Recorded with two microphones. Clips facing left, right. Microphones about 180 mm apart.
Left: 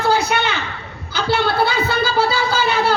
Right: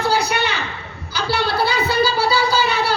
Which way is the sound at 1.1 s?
50° left (ahead or behind).